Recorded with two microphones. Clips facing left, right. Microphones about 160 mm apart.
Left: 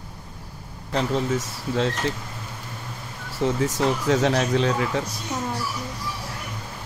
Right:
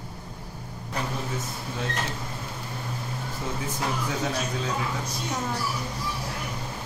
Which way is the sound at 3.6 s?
80° left.